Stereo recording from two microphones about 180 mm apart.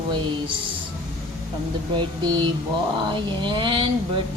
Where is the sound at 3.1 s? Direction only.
30° right (ahead or behind).